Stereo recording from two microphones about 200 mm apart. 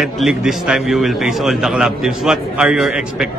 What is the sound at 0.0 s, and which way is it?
A man's voice, centre (ahead or behind).